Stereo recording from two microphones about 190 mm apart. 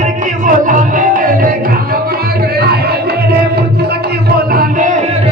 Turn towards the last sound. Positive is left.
turn(degrees=-40)  # may be behind; listen again after turning